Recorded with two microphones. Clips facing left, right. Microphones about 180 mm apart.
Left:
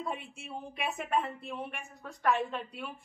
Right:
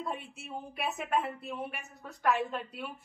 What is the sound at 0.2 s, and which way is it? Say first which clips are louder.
A woman's voice: even; centre (ahead or behind).